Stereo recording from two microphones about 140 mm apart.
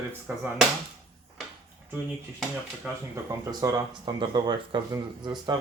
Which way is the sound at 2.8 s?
5° right (ahead or behind).